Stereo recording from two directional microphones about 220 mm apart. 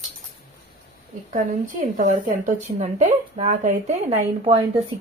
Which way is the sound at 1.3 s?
35° right (ahead or behind).